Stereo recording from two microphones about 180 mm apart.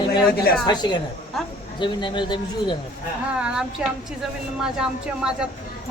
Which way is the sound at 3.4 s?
5° right (ahead or behind).